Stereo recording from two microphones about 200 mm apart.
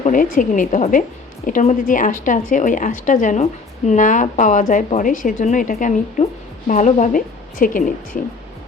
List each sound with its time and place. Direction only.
0.0 s a woman's voice: 40° left (ahead or behind)